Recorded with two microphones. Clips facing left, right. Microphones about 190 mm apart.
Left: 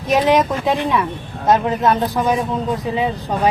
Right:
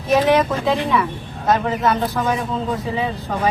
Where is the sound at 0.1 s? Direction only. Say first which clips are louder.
Even; 15° left (ahead or behind).